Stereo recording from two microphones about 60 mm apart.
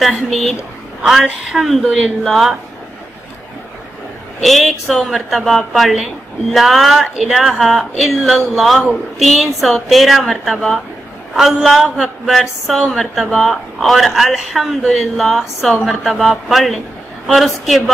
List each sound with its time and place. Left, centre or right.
0.0 s speech: centre
1.5 s a woman's voice: centre
2.0 s speech: centre
4.4 s speech: centre